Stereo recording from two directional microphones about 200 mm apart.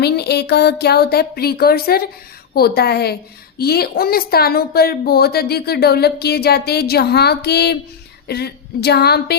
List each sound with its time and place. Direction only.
0.0 s speech: 55° left (ahead or behind)